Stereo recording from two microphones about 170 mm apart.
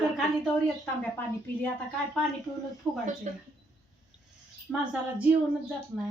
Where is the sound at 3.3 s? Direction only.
45° right (ahead or behind).